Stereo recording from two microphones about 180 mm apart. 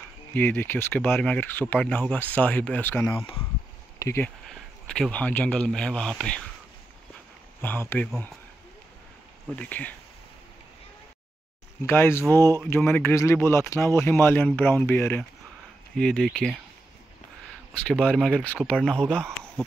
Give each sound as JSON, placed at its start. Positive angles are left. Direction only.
{"t": 0.3, "sound": "speech", "side_deg": 10}
{"t": 3.1, "sound": "speech", "side_deg": 25}
{"t": 4.0, "sound": "speech", "side_deg": 15}
{"t": 4.5, "sound": "speech", "side_deg": 5}
{"t": 7.6, "sound": "speech", "side_deg": 10}
{"t": 9.6, "sound": "speech", "side_deg": 10}
{"t": 11.8, "sound": "speech", "side_deg": 15}
{"t": 18.0, "sound": "speech", "side_deg": 5}